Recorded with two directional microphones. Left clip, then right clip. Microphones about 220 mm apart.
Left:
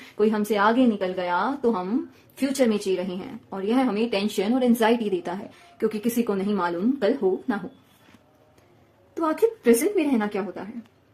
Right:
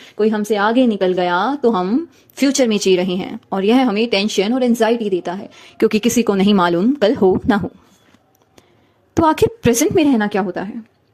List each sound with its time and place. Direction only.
0.2 s a woman's voice: 20° right (ahead or behind)
5.7 s a woman's voice: 35° right (ahead or behind)
9.1 s a woman's voice: 40° right (ahead or behind)